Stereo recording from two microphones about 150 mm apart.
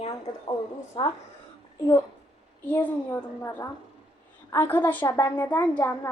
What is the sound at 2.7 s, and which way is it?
Child singing, 15° left (ahead or behind).